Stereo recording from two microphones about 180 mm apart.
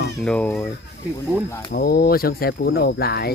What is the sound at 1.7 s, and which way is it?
Speech, 60° left (ahead or behind).